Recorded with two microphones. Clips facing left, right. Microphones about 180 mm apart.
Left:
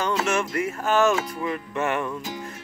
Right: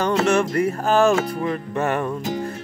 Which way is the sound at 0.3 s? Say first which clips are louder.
Right 6 dB; 35° right (ahead or behind).